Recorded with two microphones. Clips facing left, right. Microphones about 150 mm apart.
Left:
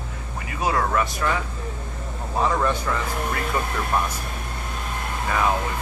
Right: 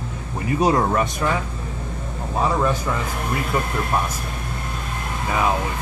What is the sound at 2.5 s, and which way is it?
Speech, 10° right (ahead or behind).